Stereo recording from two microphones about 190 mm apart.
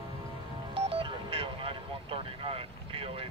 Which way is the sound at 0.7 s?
30° right (ahead or behind).